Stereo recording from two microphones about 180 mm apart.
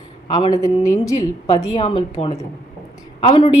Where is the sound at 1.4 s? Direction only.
35° left (ahead or behind).